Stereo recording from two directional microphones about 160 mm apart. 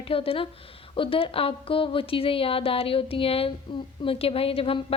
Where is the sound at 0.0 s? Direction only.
35° left (ahead or behind).